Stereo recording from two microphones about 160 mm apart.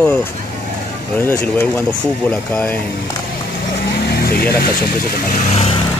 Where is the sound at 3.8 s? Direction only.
80° left.